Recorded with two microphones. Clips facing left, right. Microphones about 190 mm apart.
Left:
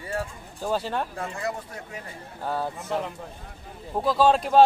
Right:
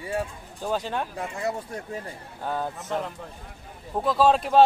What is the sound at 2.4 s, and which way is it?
Speech, 5° left (ahead or behind).